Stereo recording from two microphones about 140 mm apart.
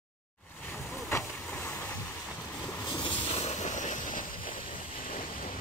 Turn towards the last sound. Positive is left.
turn(degrees=65)  # may be behind; listen again after turning